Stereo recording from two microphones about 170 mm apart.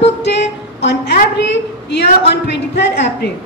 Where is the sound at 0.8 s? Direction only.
90° left.